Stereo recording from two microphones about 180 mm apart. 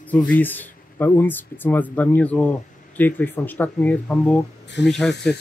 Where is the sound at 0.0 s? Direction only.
10° left (ahead or behind).